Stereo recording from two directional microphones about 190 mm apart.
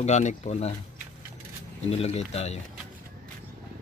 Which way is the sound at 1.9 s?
35° left (ahead or behind).